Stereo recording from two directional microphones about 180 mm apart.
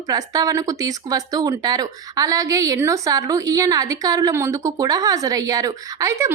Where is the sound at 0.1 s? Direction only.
20° right (ahead or behind).